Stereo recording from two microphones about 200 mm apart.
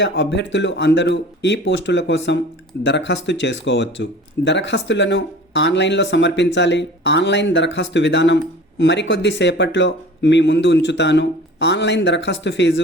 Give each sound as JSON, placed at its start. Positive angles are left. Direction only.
{"t": 0.0, "sound": "speech", "side_deg": 65}